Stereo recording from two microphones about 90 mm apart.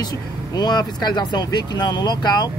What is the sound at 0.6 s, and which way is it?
Speech, 50° left (ahead or behind).